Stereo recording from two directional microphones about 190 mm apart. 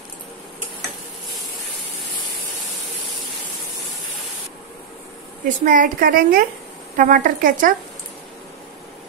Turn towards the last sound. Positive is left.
turn(degrees=-45)  # may be behind; listen again after turning